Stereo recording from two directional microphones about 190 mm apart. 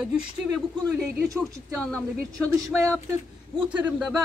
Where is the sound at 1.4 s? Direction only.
5° left (ahead or behind).